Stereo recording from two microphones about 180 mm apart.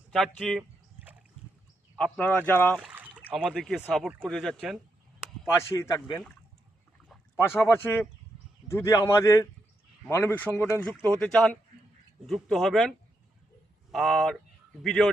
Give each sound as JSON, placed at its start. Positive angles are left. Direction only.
{"t": 0.2, "sound": "speech", "side_deg": 5}
{"t": 2.0, "sound": "a man's voice", "side_deg": 5}
{"t": 2.7, "sound": "speech", "side_deg": -5}
{"t": 5.7, "sound": "a man's voice", "side_deg": 20}
{"t": 7.3, "sound": "a man's voice", "side_deg": 15}
{"t": 13.9, "sound": "speech", "side_deg": 0}